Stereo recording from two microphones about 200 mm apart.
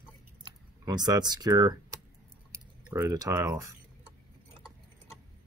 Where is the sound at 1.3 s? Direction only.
20° right (ahead or behind).